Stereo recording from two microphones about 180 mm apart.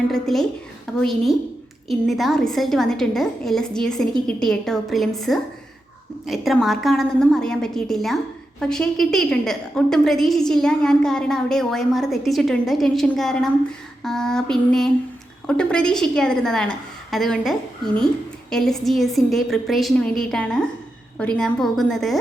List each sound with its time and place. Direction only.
0.1 s a woman's voice: centre (ahead or behind)